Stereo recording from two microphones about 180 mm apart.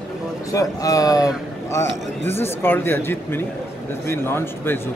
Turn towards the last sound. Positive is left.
turn(degrees=10)  # may be behind; listen again after turning